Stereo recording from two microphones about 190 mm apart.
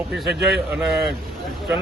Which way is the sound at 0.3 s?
65° right (ahead or behind).